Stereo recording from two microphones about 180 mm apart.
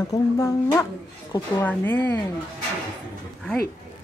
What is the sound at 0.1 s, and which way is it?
Speech, 20° left (ahead or behind).